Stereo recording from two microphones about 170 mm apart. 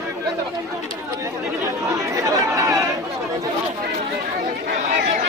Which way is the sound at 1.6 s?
20° right (ahead or behind).